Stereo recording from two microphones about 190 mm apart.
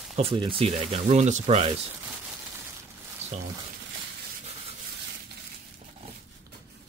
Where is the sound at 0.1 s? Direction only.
30° right (ahead or behind).